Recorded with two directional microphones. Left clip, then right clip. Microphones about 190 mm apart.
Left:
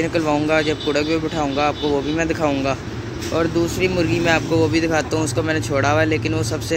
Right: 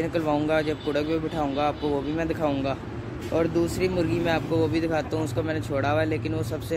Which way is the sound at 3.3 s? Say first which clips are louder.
Left 4 dB; 20° right (ahead or behind).